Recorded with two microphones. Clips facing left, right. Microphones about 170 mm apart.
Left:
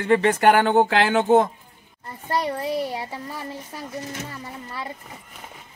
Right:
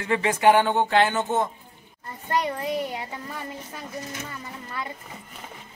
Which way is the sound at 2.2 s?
35° left (ahead or behind).